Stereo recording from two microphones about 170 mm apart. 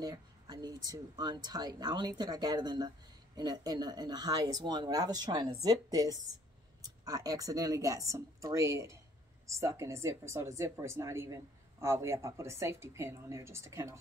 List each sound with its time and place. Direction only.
0.0 s a woman's voice: 25° right (ahead or behind)